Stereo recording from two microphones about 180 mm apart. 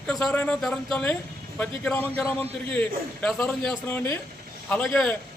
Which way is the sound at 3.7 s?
15° left (ahead or behind).